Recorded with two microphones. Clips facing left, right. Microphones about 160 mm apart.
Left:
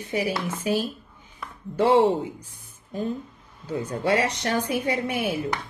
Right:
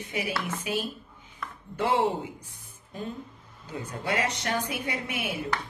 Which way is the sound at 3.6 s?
30° left (ahead or behind).